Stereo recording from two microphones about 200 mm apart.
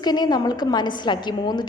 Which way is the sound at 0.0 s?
20° left (ahead or behind).